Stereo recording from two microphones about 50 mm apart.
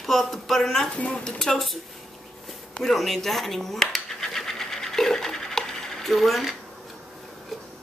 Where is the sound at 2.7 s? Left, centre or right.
Centre.